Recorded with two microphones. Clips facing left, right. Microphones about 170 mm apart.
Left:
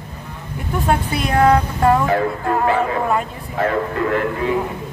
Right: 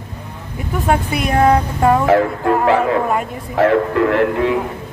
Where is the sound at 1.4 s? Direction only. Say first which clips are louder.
Even; 20° right (ahead or behind).